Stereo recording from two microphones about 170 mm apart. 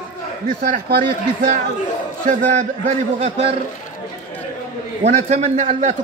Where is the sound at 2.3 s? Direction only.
50° right (ahead or behind).